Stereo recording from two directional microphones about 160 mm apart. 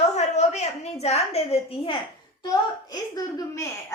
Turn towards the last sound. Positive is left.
turn(degrees=20)  # may be behind; listen again after turning